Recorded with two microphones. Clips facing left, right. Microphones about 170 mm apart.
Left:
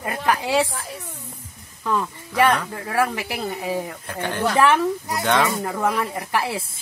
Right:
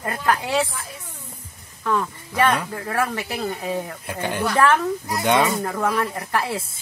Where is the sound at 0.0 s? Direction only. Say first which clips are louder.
Even; 15° left (ahead or behind).